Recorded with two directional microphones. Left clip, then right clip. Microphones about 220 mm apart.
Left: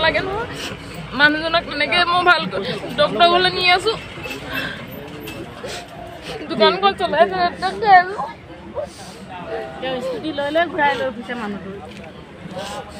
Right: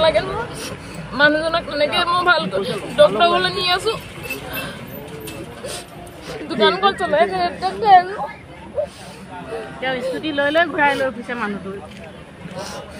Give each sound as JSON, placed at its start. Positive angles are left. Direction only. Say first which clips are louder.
{"t": 0.0, "sound": "a man's voice", "louder": "right 2 dB", "side_deg": 0}
{"t": 6.2, "sound": "a man's voice", "louder": "left 1 dB", "side_deg": 0}
{"t": 9.8, "sound": "a woman's voice", "louder": "right 4 dB", "side_deg": -20}